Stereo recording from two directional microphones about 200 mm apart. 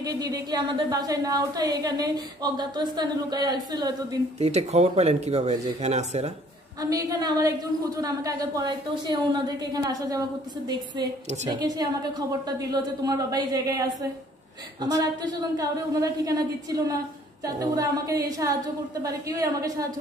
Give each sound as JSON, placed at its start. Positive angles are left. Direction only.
{"t": 0.0, "sound": "speech", "side_deg": -20}
{"t": 4.4, "sound": "speech", "side_deg": -35}
{"t": 6.8, "sound": "a woman's voice", "side_deg": -20}
{"t": 11.5, "sound": "a woman's voice", "side_deg": -20}